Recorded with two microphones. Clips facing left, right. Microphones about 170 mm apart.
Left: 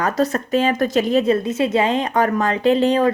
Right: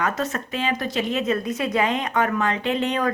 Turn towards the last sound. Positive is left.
turn(degrees=30)  # may be behind; listen again after turning